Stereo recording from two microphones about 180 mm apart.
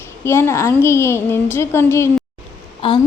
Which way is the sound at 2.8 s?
25° left (ahead or behind).